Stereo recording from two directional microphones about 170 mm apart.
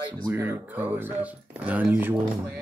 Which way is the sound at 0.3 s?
10° right (ahead or behind).